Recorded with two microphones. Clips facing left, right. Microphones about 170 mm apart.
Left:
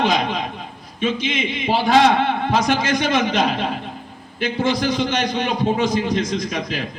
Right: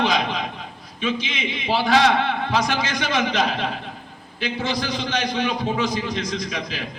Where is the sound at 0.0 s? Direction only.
50° left (ahead or behind).